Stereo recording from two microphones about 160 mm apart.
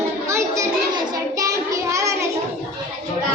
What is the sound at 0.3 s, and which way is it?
Child singing, 20° right (ahead or behind).